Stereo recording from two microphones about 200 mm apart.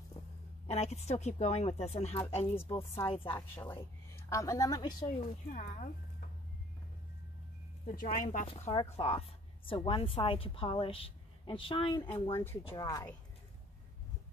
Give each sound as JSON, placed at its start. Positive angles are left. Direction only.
{"t": 0.7, "sound": "a woman's voice", "side_deg": 30}
{"t": 3.5, "sound": "a woman's voice", "side_deg": 10}
{"t": 5.5, "sound": "speech", "side_deg": 40}
{"t": 7.8, "sound": "speech", "side_deg": 45}
{"t": 8.5, "sound": "a woman's voice", "side_deg": 30}